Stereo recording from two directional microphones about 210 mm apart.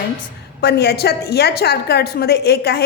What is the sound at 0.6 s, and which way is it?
A woman's voice, 50° left (ahead or behind).